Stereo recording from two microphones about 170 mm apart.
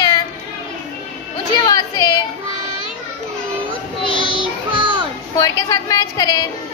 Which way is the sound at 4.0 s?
30° left (ahead or behind).